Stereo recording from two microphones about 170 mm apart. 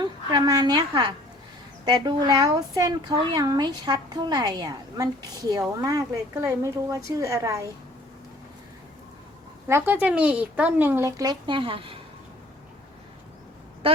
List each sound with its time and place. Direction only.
0.0 s a woman's voice: 25° right (ahead or behind)
9.6 s speech: 15° right (ahead or behind); by 11.9 s 30° right (ahead or behind)